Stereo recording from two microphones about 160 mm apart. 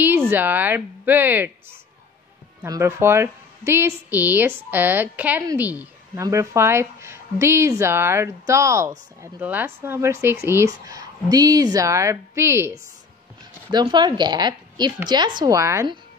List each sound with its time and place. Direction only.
0.3 s speech: 10° right (ahead or behind)
2.6 s a woman's voice: 15° right (ahead or behind)
13.7 s speech: 25° right (ahead or behind)